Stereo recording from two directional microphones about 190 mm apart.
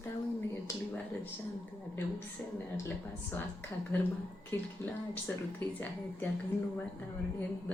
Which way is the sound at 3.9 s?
10° left (ahead or behind).